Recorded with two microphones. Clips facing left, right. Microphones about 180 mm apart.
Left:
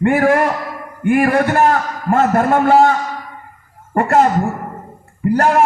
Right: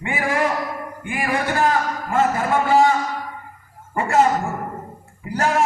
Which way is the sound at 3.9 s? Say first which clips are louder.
Left 4 dB; 55° left (ahead or behind).